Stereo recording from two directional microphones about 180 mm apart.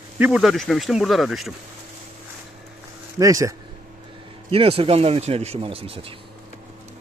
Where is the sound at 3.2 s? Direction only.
20° right (ahead or behind).